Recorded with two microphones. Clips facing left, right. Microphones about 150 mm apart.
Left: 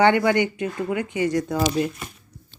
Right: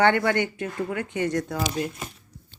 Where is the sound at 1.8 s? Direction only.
30° left (ahead or behind).